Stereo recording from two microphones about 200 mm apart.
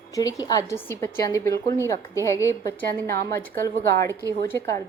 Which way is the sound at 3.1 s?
50° right (ahead or behind).